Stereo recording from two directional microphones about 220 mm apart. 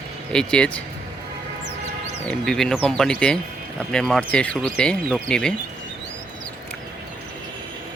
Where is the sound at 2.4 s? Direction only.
Centre (ahead or behind).